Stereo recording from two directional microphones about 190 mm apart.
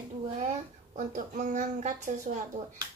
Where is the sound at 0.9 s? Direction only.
40° right (ahead or behind).